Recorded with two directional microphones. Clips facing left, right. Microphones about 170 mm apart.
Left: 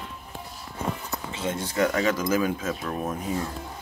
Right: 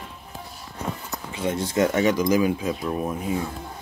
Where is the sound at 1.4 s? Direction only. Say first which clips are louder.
Right 3 dB; 20° right (ahead or behind).